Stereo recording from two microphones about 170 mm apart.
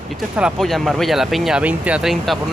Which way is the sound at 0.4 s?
Centre (ahead or behind).